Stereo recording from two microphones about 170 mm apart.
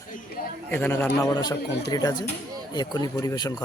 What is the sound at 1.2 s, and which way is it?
Speech, 25° left (ahead or behind).